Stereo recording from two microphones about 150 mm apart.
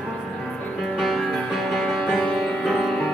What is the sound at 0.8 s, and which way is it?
Music, centre (ahead or behind).